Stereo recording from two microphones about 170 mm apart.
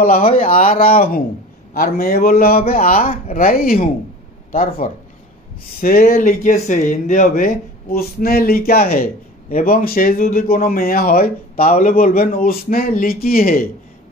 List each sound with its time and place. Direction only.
0.0 s speech: 55° left (ahead or behind)